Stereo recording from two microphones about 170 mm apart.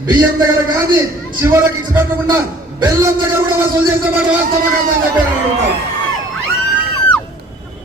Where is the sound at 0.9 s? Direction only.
15° right (ahead or behind).